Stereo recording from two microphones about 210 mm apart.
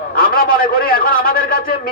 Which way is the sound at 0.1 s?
45° left (ahead or behind).